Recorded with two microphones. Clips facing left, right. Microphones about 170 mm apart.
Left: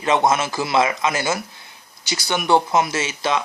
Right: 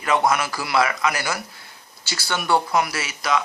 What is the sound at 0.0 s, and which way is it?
Speech, 25° left (ahead or behind).